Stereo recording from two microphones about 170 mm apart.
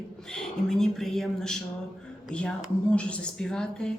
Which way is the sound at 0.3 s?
5° left (ahead or behind).